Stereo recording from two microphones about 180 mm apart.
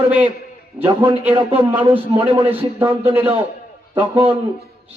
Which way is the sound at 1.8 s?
30° right (ahead or behind).